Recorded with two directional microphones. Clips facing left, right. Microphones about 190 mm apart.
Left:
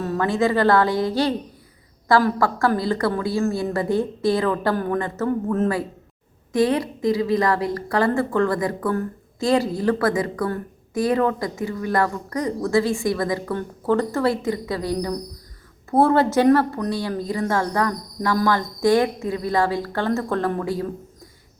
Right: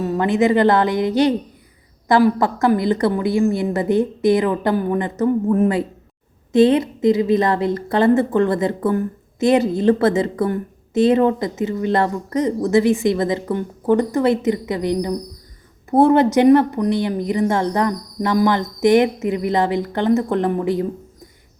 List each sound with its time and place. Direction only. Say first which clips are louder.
0.0 s a woman's voice: right 4 dB; 15° right (ahead or behind)